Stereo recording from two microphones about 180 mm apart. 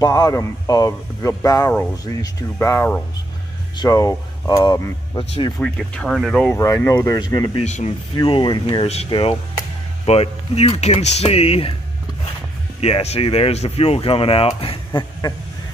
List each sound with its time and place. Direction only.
0.0 s speech: 20° left (ahead or behind)
5.6 s speech: 5° left (ahead or behind)
6.6 s speech: 15° left (ahead or behind)
7.5 s speech: 40° left (ahead or behind)
8.2 s speech: 25° left (ahead or behind)
12.8 s speech: 35° left (ahead or behind)
14.9 s a sound: 20° left (ahead or behind)